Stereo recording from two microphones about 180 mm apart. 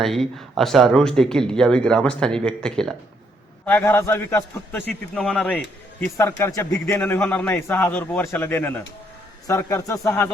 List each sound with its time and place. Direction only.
0.0 s a man's voice: centre (ahead or behind)